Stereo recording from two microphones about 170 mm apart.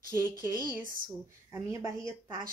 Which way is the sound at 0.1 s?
15° right (ahead or behind).